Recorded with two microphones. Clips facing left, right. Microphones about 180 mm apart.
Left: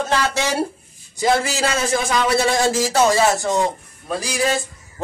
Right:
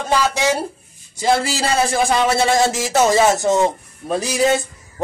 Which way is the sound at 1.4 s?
35° right (ahead or behind).